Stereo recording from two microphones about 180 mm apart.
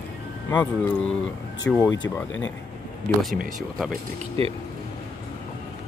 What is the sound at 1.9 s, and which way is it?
Speech, 90° left.